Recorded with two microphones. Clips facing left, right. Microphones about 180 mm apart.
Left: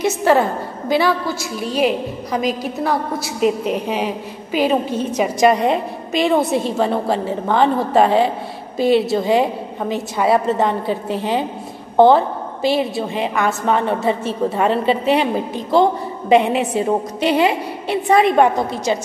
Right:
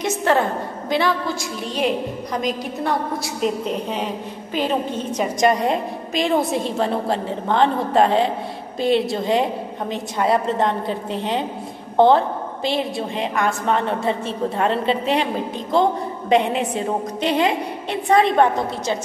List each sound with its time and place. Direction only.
0.0 s a woman's voice: 5° left (ahead or behind)